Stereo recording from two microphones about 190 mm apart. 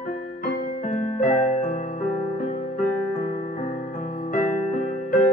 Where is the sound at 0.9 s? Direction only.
45° left (ahead or behind).